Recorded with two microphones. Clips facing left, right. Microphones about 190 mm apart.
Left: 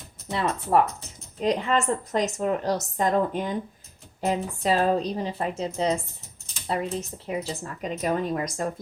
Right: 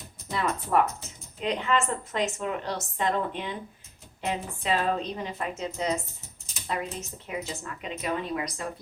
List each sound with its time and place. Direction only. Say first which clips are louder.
0.3 s a woman's voice: left 3 dB; 30° left (ahead or behind)